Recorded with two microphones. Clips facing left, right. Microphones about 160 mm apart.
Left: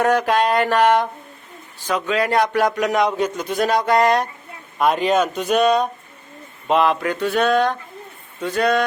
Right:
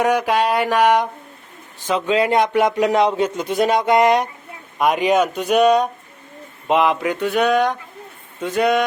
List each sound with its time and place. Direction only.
0.0 s speech: 10° right (ahead or behind)
1.9 s speech: 25° right (ahead or behind)